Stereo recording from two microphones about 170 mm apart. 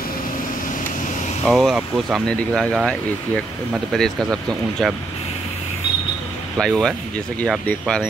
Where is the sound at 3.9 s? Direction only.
Centre (ahead or behind).